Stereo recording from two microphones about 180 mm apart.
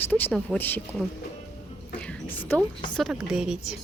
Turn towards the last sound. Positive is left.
turn(degrees=-5)  # may be behind; listen again after turning